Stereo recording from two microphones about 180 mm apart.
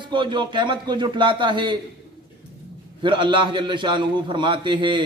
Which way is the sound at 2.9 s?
25° right (ahead or behind).